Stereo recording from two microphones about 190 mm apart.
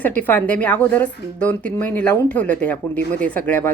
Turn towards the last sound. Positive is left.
turn(degrees=10)  # may be behind; listen again after turning